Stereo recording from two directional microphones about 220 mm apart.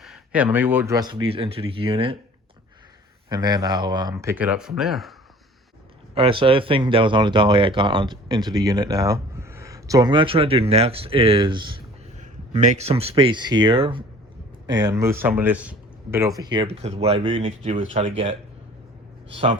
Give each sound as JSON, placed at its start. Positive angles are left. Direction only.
{"t": 0.0, "sound": "speech", "side_deg": -5}
{"t": 3.2, "sound": "speech", "side_deg": -20}
{"t": 6.1, "sound": "speech", "side_deg": -25}
{"t": 12.2, "sound": "speech", "side_deg": -35}
{"t": 16.4, "sound": "speech", "side_deg": -20}